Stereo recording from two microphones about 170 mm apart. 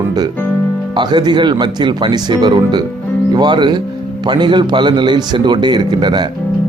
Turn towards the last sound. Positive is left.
turn(degrees=-25)  # may be behind; listen again after turning